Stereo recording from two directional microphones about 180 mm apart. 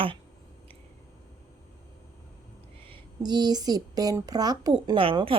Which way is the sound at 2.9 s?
25° right (ahead or behind).